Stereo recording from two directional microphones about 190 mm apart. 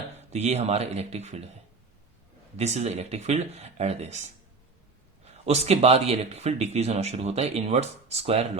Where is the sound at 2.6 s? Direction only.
35° right (ahead or behind).